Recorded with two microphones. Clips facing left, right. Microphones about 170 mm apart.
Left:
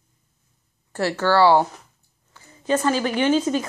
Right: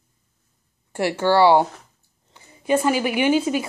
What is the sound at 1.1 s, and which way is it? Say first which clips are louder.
A woman's voice: right 1 dB; 15° right (ahead or behind).